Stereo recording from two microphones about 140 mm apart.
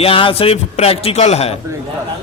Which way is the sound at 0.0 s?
40° left (ahead or behind).